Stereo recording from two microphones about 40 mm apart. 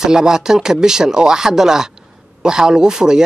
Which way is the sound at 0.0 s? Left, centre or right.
Centre.